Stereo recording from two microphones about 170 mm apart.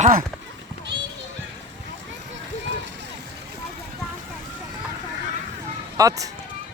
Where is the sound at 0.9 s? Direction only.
80° right.